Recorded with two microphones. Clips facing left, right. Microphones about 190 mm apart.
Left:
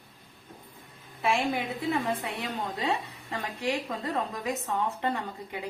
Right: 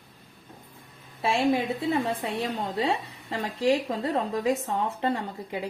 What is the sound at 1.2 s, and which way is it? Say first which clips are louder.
A woman's voice: right 4 dB; 30° right (ahead or behind).